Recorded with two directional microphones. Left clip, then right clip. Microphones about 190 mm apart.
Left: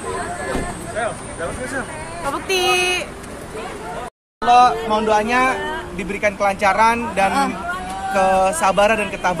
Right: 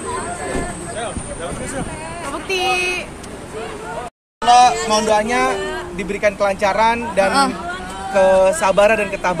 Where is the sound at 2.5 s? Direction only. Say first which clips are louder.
Left 1 dB; 35° left (ahead or behind).